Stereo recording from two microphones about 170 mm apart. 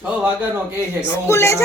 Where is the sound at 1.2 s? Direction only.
15° left (ahead or behind).